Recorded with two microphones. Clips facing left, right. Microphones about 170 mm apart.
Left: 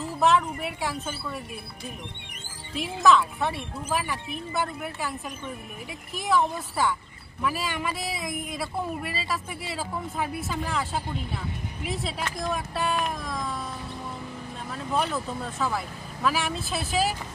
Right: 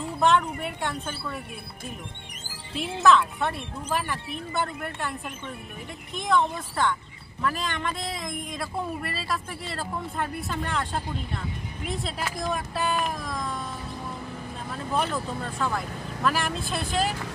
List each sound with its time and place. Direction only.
0.0 s speech: 5° left (ahead or behind)
2.8 s speech: centre (ahead or behind)
6.1 s speech: centre (ahead or behind)
14.7 s speech: centre (ahead or behind)